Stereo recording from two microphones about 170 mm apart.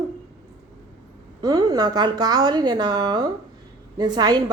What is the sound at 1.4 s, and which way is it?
A woman's voice, 25° right (ahead or behind).